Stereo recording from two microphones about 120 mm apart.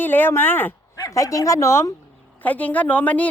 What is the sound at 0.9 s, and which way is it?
A woman's voice, 25° left (ahead or behind).